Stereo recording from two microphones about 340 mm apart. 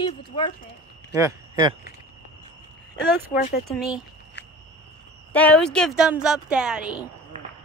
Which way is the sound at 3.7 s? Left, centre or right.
Centre.